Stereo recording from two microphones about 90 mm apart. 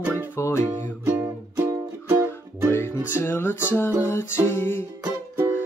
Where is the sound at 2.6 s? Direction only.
25° left (ahead or behind).